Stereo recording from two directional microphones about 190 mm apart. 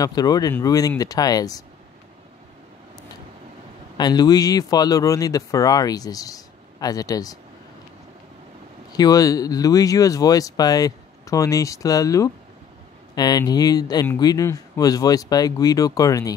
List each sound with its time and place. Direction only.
0.0 s speech: 20° left (ahead or behind)
4.0 s speech: 20° left (ahead or behind)
8.9 s speech: 20° left (ahead or behind)